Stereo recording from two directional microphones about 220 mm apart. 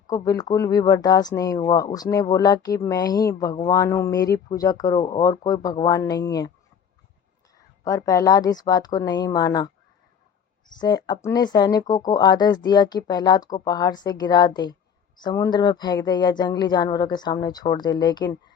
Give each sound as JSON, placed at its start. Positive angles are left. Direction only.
{"t": 0.1, "sound": "speech", "side_deg": 15}
{"t": 7.9, "sound": "speech", "side_deg": 15}
{"t": 10.8, "sound": "speech", "side_deg": 20}